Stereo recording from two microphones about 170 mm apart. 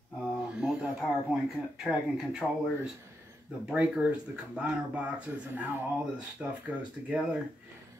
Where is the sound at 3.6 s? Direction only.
5° right (ahead or behind).